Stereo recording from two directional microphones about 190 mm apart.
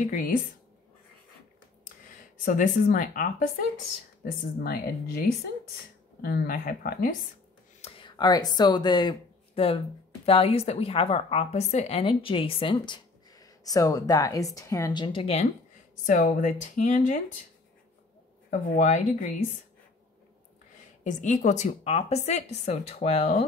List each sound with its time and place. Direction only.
0.0 s speech: 45° left (ahead or behind)
2.0 s speech: 45° left (ahead or behind)
6.2 s speech: 55° left (ahead or behind)
7.8 s a woman's voice: 25° left (ahead or behind)
16.1 s speech: 40° left (ahead or behind)
18.5 s speech: 40° left (ahead or behind)
21.0 s speech: 40° left (ahead or behind)